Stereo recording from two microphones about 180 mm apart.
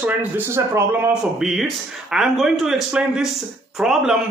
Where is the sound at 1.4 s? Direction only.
Centre (ahead or behind).